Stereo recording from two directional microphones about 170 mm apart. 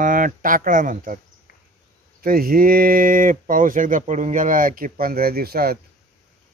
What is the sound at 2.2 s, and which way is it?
Speech, 60° right (ahead or behind).